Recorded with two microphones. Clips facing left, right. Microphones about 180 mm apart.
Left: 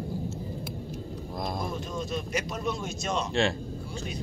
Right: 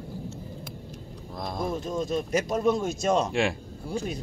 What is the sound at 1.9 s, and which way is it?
Speech, 45° right (ahead or behind).